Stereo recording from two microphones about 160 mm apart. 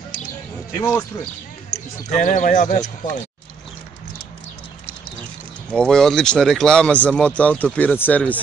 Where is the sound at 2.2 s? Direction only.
55° left (ahead or behind).